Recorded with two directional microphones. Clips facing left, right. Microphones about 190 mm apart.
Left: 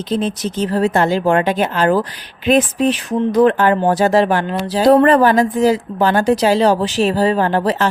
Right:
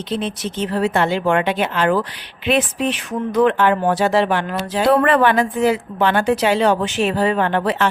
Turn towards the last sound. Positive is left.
turn(degrees=40)  # may be behind; listen again after turning